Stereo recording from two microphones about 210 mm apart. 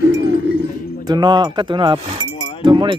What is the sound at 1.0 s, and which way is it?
Speech, 20° right (ahead or behind).